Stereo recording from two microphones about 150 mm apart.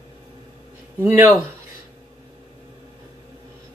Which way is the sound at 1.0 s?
15° right (ahead or behind).